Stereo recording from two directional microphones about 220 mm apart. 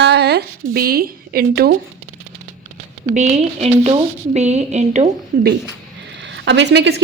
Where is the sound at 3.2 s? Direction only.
30° right (ahead or behind).